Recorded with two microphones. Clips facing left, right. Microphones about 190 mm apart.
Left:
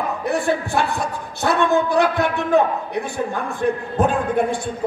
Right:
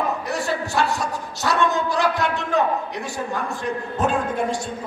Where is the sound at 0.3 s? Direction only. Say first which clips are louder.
Left 4 dB; 55° left (ahead or behind).